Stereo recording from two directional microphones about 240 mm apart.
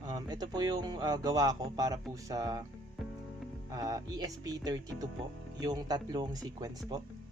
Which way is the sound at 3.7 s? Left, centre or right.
Centre.